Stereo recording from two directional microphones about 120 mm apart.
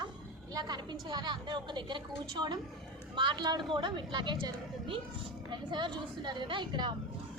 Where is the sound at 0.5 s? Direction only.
40° right (ahead or behind).